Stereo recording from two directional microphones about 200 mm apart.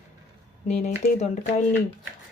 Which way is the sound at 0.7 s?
35° left (ahead or behind).